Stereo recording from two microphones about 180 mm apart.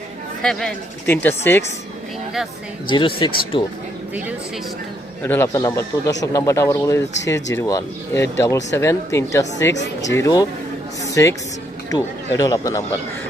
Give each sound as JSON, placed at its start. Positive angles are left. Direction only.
{"t": 0.4, "sound": "speech", "side_deg": 5}
{"t": 2.9, "sound": "speech", "side_deg": 25}
{"t": 5.2, "sound": "a woman's voice", "side_deg": 15}